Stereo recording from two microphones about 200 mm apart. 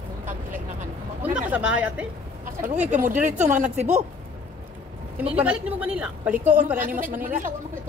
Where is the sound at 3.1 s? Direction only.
5° right (ahead or behind).